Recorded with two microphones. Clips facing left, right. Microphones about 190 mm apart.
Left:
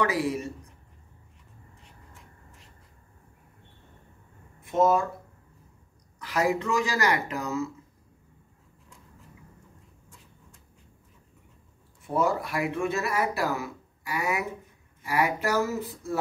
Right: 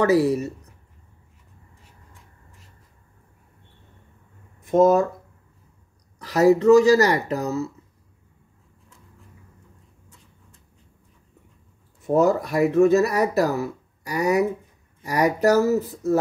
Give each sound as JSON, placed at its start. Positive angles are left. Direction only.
{"t": 0.0, "sound": "speech", "side_deg": -40}
{"t": 4.6, "sound": "speech", "side_deg": -45}
{"t": 6.1, "sound": "speech", "side_deg": -35}
{"t": 12.0, "sound": "speech", "side_deg": -45}